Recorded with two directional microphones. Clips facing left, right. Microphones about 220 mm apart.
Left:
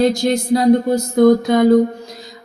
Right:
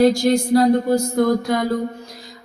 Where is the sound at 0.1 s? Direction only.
20° left (ahead or behind).